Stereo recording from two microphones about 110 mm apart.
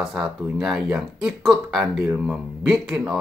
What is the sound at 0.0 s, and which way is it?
Speech, 5° right (ahead or behind).